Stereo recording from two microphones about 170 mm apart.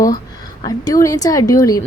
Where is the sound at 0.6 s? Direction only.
25° left (ahead or behind).